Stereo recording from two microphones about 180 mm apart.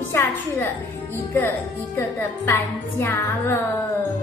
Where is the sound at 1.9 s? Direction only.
10° left (ahead or behind).